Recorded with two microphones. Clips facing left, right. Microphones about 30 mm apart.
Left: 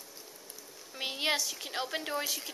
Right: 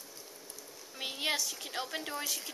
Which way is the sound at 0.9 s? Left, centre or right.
Left.